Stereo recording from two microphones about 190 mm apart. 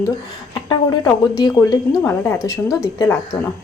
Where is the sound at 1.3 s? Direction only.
20° left (ahead or behind).